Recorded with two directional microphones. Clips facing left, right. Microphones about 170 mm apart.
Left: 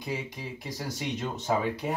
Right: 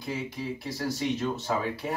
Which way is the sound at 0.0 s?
15° left (ahead or behind).